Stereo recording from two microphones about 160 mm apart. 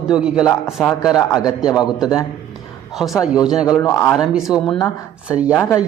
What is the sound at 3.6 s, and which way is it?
Speech, 20° left (ahead or behind).